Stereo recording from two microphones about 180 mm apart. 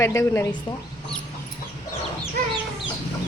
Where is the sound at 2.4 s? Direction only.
55° right (ahead or behind).